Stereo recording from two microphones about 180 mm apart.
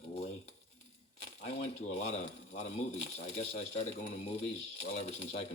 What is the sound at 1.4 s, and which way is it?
Speech, 40° left (ahead or behind).